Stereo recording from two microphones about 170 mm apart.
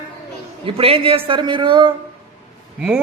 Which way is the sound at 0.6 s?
35° right (ahead or behind).